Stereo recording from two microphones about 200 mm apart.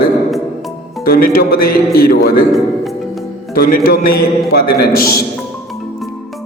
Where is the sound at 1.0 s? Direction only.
50° left (ahead or behind).